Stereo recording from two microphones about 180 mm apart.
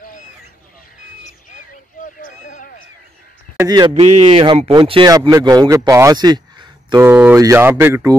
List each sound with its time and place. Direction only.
1.2 s a sound: 45° left (ahead or behind)
3.5 s speech: 20° right (ahead or behind)
7.0 s speech: 10° right (ahead or behind)